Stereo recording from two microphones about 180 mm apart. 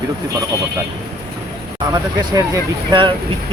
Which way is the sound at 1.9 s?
20° right (ahead or behind).